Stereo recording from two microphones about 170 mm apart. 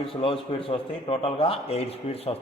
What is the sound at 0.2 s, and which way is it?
Speech, 30° left (ahead or behind).